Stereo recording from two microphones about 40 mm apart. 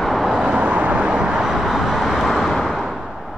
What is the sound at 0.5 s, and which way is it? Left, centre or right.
Vehicle, right.